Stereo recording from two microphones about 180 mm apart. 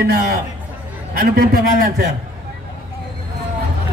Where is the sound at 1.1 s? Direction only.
55° right (ahead or behind).